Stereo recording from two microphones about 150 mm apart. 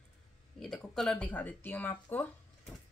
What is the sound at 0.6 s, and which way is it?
Speech, 5° left (ahead or behind).